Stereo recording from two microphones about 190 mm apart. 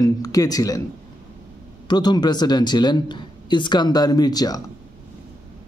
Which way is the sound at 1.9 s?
20° left (ahead or behind).